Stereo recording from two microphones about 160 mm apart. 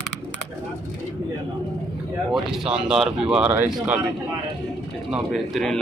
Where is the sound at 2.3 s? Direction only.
5° right (ahead or behind).